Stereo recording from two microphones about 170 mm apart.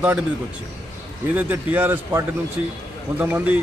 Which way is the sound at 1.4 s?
10° right (ahead or behind).